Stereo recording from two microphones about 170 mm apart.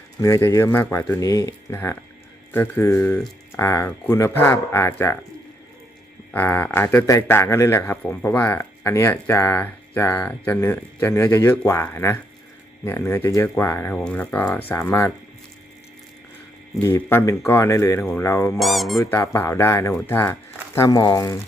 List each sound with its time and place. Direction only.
0.2 s a man's voice: 15° left (ahead or behind)
6.3 s a man's voice: 10° left (ahead or behind)
16.8 s a man's voice: 15° left (ahead or behind)
18.6 s speech: centre (ahead or behind)
18.9 s a man's voice: 15° left (ahead or behind)